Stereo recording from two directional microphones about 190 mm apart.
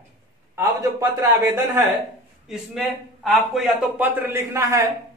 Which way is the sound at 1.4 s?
15° right (ahead or behind).